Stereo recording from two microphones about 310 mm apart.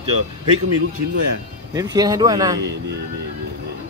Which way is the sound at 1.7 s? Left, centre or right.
Centre.